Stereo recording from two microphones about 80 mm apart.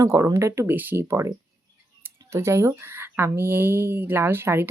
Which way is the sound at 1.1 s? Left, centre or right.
Right.